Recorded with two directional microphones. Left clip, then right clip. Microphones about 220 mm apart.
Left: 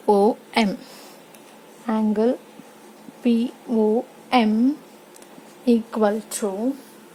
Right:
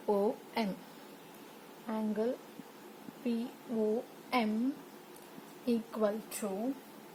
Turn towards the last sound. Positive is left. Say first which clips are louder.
# left 13 dB
turn(degrees=50)  # may be behind; listen again after turning